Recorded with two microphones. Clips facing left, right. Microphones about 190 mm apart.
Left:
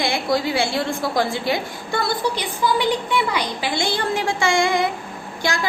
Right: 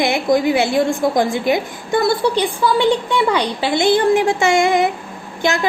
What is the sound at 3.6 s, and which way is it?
A woman's voice, 25° right (ahead or behind).